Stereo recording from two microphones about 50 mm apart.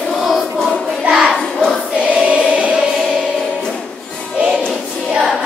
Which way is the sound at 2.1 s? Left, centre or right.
Right.